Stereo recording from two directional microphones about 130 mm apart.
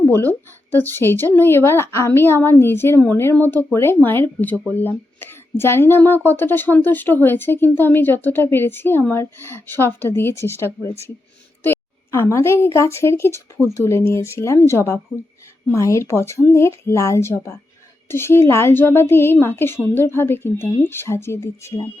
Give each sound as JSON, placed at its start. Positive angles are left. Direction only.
{"t": 0.7, "sound": "a woman's voice", "side_deg": 15}